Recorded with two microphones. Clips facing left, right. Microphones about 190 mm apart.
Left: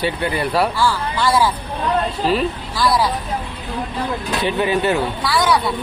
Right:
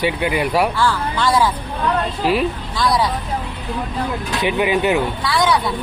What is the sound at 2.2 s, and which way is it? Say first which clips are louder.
Speech: right 1 dB; 10° right (ahead or behind).